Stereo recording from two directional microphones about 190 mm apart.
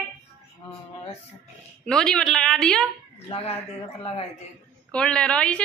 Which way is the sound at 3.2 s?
30° left (ahead or behind).